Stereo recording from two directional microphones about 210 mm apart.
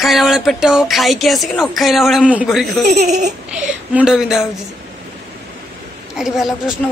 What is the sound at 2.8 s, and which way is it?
Speech, 35° right (ahead or behind).